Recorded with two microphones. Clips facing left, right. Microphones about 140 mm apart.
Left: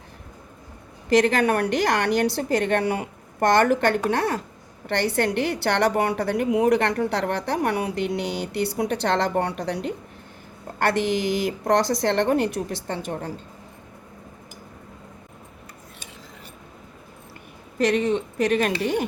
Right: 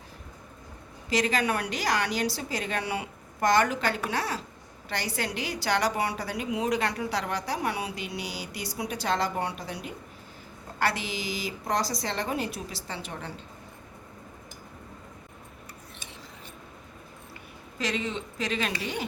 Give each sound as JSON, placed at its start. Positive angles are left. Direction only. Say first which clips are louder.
{"t": 1.1, "sound": "a woman's voice", "louder": "left 8 dB", "side_deg": 60}
{"t": 10.8, "sound": "a woman's voice", "louder": "left 8 dB", "side_deg": 55}
{"t": 17.7, "sound": "a woman's voice", "louder": "left 10 dB", "side_deg": 55}